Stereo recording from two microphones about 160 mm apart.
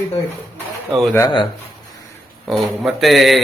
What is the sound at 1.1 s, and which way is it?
Speech, 25° left (ahead or behind).